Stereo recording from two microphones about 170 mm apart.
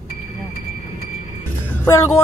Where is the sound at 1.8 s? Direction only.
20° left (ahead or behind).